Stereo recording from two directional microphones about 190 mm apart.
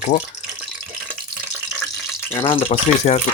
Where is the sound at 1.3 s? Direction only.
5° right (ahead or behind).